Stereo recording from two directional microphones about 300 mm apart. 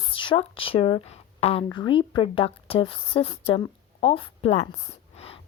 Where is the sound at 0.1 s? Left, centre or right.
Centre.